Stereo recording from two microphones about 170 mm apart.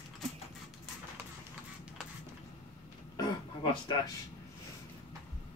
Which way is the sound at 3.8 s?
25° left (ahead or behind).